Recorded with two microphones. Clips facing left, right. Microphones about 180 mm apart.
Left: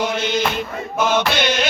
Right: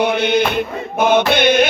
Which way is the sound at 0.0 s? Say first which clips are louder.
Right 5 dB; 60° right (ahead or behind).